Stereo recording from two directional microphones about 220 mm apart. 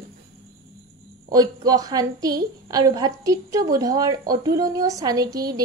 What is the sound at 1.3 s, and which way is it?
A woman's voice, 15° right (ahead or behind).